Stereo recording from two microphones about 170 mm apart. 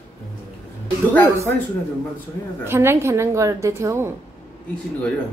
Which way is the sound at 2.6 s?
15° right (ahead or behind).